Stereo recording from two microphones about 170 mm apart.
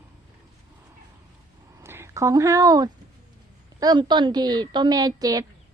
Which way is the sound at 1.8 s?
15° right (ahead or behind).